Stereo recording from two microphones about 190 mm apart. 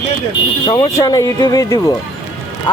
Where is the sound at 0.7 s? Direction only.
20° left (ahead or behind).